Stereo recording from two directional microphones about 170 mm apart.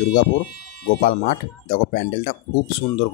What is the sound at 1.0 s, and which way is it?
Speech, 55° left (ahead or behind).